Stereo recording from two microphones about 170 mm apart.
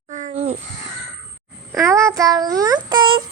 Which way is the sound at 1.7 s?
15° right (ahead or behind).